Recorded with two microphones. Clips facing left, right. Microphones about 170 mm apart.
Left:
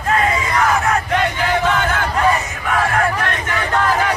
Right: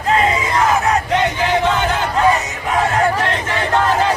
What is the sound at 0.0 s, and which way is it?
Crowd, 20° right (ahead or behind).